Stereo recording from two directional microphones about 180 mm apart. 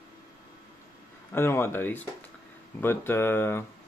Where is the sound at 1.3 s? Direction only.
15° left (ahead or behind).